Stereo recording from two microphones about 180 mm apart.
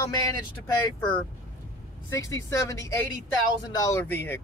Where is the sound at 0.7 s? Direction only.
25° left (ahead or behind).